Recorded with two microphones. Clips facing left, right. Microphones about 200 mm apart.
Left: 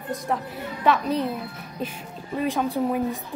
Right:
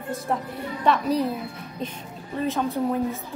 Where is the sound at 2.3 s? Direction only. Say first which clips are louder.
Left 1 dB; 15° left (ahead or behind).